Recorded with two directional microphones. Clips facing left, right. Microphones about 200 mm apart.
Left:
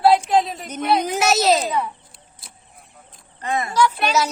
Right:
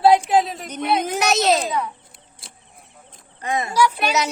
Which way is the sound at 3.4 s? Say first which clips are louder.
Even; 15° right (ahead or behind).